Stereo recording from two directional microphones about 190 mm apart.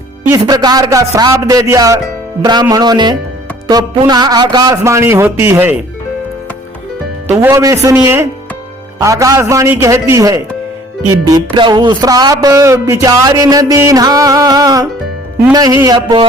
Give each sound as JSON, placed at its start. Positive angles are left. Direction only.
{"t": 0.3, "sound": "a man's voice", "side_deg": -20}
{"t": 7.3, "sound": "a man's voice", "side_deg": -15}